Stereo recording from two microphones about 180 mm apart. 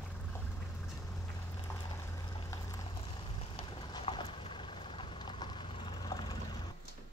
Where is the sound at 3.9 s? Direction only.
25° left (ahead or behind).